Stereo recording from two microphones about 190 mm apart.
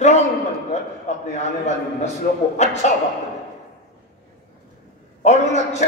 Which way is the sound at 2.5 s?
35° left (ahead or behind).